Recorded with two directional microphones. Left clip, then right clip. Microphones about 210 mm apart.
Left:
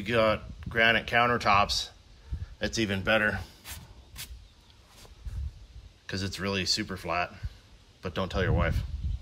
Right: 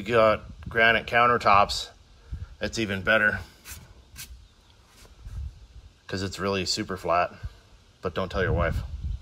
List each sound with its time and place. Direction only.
0.0 s speech: 10° left (ahead or behind)
3.6 s a sound: 50° left (ahead or behind)
6.0 s speech: 10° left (ahead or behind)